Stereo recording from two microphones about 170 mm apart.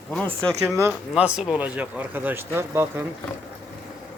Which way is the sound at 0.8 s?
10° right (ahead or behind).